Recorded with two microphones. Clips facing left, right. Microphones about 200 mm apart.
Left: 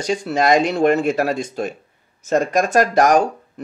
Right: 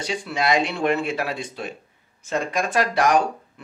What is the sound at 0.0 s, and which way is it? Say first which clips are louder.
Speech: left 6 dB; 45° left (ahead or behind).